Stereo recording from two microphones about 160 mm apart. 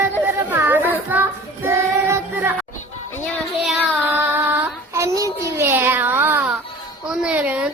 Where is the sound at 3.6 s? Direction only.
5° right (ahead or behind).